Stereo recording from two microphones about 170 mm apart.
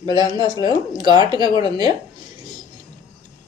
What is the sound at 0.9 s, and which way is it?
Speech, 25° right (ahead or behind).